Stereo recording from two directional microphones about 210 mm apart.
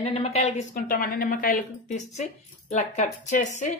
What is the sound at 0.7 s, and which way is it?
A woman's voice, 45° left (ahead or behind).